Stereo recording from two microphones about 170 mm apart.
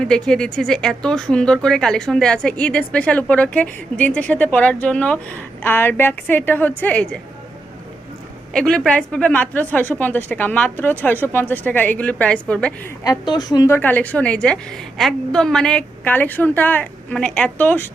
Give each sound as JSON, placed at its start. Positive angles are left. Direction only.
{"t": 0.0, "sound": "speech", "side_deg": 5}
{"t": 8.5, "sound": "speech", "side_deg": 5}
{"t": 13.1, "sound": "a woman's voice", "side_deg": 25}
{"t": 13.7, "sound": "speech", "side_deg": 10}